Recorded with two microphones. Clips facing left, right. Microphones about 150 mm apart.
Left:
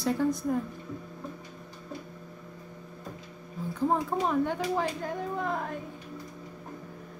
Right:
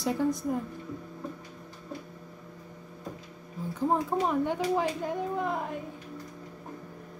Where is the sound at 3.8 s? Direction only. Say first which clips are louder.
Even; 10° right (ahead or behind).